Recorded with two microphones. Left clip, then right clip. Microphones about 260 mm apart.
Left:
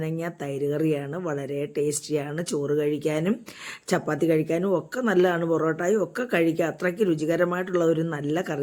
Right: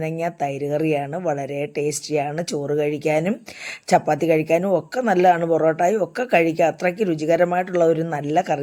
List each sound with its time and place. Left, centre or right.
0.0 s speech: centre